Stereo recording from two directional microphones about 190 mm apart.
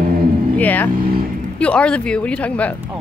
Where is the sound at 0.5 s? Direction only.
10° left (ahead or behind).